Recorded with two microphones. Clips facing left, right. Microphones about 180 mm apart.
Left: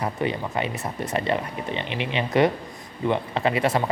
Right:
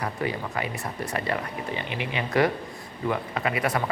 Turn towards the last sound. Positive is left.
turn(degrees=25)  # may be behind; listen again after turning